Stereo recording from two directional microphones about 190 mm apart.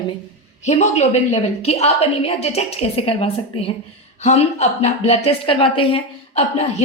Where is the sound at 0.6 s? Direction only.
35° left (ahead or behind).